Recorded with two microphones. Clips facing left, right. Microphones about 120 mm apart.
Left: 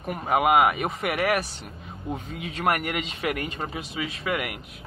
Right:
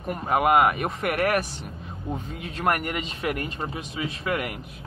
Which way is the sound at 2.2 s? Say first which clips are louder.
Even; 40° right (ahead or behind).